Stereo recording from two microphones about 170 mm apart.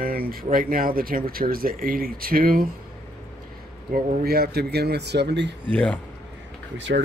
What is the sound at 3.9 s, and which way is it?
Speech, 65° right (ahead or behind).